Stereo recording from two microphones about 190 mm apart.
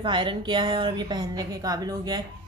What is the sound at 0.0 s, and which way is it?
A woman's voice, 25° right (ahead or behind).